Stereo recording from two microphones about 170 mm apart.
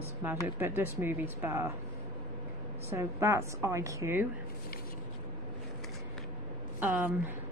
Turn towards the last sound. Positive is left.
turn(degrees=-10)  # may be behind; listen again after turning